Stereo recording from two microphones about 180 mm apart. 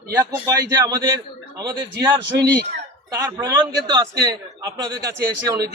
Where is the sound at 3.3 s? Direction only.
15° right (ahead or behind).